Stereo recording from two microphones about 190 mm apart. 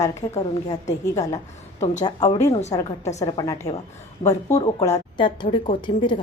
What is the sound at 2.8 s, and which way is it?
Speech, 35° left (ahead or behind).